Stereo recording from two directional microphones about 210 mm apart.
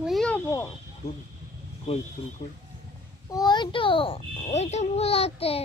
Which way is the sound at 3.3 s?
20° left (ahead or behind).